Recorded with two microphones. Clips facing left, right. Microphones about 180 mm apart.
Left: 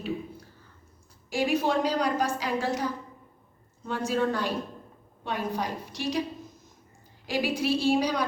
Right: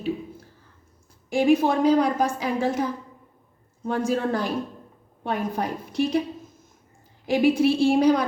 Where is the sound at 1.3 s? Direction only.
50° right (ahead or behind).